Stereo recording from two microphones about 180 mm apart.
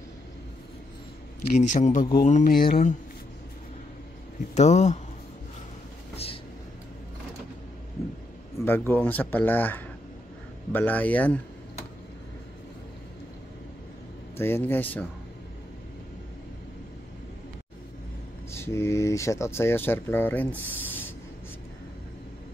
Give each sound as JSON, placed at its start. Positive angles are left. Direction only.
{"t": 1.6, "sound": "speech", "side_deg": 40}
{"t": 4.6, "sound": "speech", "side_deg": 40}
{"t": 6.1, "sound": "vehicle", "side_deg": 30}
{"t": 8.6, "sound": "speech", "side_deg": 10}
{"t": 14.3, "sound": "speech", "side_deg": 10}
{"t": 18.5, "sound": "speech", "side_deg": 15}